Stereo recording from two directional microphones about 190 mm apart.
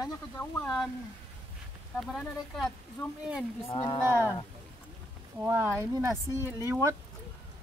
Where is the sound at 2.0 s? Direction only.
Centre (ahead or behind).